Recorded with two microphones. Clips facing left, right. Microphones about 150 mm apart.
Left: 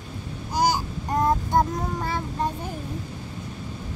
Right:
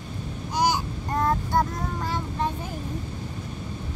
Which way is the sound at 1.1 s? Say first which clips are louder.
Left 2 dB; 20° left (ahead or behind).